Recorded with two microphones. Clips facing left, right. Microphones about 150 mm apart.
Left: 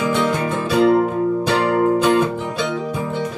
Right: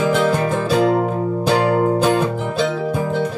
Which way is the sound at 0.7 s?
20° right (ahead or behind).